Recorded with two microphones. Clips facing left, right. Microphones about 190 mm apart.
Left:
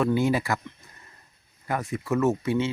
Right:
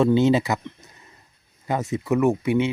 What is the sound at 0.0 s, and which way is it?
Speech, 25° right (ahead or behind).